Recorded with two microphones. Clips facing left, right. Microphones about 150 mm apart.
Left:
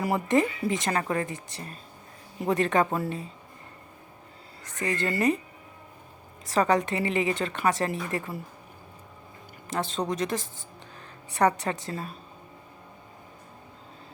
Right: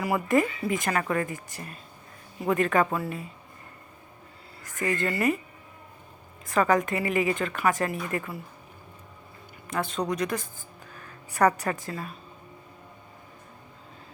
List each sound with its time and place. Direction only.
0.0 s a woman's voice: 25° left (ahead or behind)
4.6 s a woman's voice: 35° left (ahead or behind)
6.4 s a woman's voice: 35° left (ahead or behind)
9.7 s a woman's voice: 25° left (ahead or behind)